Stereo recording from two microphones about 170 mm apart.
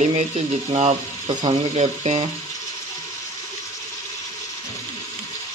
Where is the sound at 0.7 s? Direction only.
35° right (ahead or behind).